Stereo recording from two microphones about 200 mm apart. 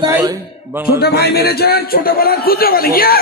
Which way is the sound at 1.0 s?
55° left (ahead or behind).